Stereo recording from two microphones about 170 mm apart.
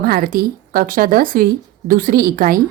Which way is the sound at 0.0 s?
60° right (ahead or behind).